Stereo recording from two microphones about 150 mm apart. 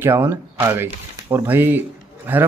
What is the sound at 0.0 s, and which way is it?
A man's voice, 15° right (ahead or behind).